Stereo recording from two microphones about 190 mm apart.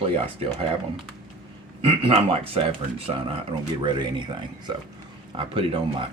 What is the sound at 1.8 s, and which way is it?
Speech, 30° right (ahead or behind).